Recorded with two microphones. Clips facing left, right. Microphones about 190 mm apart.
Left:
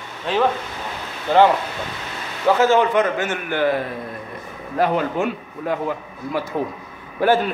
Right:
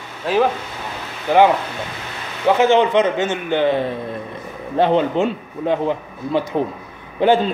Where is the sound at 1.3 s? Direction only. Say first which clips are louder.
Right 1 dB; 15° right (ahead or behind).